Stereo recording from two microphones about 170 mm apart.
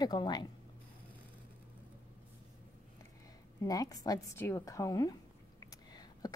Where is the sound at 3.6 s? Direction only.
20° left (ahead or behind).